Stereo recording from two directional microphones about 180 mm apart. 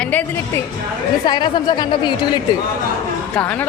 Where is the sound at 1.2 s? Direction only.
25° left (ahead or behind).